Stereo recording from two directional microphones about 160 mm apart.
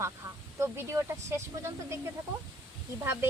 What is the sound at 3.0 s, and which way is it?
Speech, 15° right (ahead or behind).